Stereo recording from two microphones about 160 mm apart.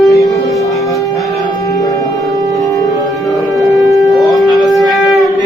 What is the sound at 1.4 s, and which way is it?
Music, 20° left (ahead or behind).